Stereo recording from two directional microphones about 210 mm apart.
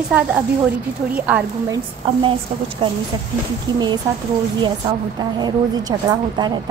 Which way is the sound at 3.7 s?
20° right (ahead or behind).